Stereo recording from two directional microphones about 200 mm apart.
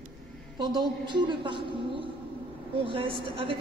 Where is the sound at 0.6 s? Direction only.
20° right (ahead or behind).